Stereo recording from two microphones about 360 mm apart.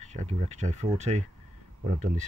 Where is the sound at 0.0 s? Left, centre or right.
Centre.